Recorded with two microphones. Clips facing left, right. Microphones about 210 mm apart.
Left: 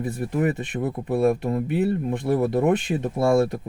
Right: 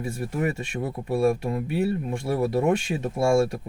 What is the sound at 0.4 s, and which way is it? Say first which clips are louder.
Speech: left 2 dB; 20° left (ahead or behind).